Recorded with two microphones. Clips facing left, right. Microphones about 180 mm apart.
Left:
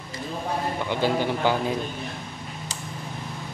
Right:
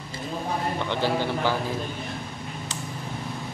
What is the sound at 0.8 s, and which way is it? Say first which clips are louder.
Speech: left 3 dB; 15° left (ahead or behind).